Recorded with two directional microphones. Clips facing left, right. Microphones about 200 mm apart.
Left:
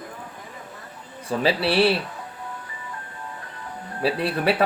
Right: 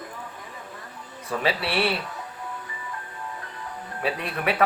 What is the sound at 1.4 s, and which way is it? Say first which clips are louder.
Speech: left 5 dB; 30° left (ahead or behind).